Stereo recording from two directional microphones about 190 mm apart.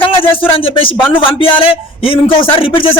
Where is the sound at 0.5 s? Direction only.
30° left (ahead or behind).